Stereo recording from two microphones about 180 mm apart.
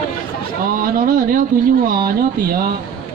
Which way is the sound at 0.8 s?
50° right (ahead or behind).